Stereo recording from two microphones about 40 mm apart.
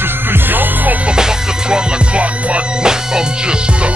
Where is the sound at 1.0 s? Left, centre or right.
Centre.